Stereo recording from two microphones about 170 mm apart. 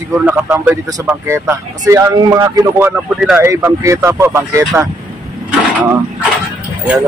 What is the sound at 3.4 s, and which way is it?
Speech, 15° right (ahead or behind).